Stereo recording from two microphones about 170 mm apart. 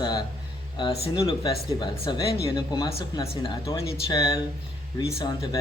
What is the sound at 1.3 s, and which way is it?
Speech, 25° left (ahead or behind).